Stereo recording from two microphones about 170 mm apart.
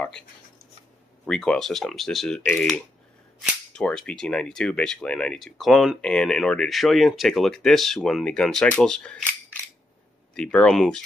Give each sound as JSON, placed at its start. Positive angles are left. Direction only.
{"t": 1.2, "sound": "speech", "side_deg": 5}
{"t": 10.3, "sound": "speech", "side_deg": 5}